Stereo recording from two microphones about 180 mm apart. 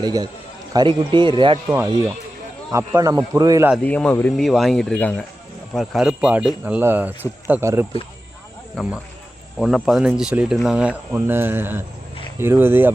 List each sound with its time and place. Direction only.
0.0 s speech: 25° right (ahead or behind)
1.7 s speech: 15° right (ahead or behind)
3.8 s speech: 10° left (ahead or behind); by 7.9 s 15° right (ahead or behind)
8.7 s speech: centre (ahead or behind)